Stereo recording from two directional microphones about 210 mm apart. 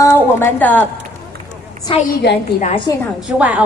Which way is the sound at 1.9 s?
25° left (ahead or behind).